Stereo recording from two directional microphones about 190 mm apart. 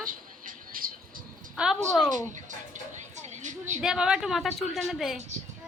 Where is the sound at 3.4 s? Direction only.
40° right (ahead or behind).